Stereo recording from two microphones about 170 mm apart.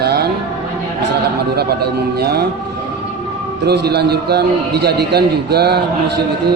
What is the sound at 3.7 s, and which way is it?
A man's voice, 70° right (ahead or behind).